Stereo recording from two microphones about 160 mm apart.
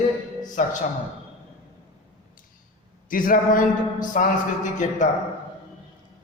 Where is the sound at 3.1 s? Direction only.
60° left (ahead or behind).